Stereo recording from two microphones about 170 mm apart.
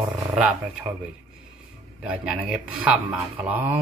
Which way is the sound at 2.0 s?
5° right (ahead or behind).